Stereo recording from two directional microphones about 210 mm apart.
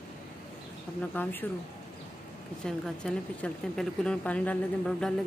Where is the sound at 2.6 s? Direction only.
5° left (ahead or behind).